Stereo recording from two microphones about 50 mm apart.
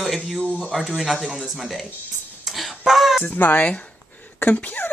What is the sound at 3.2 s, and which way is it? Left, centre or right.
Speech, left.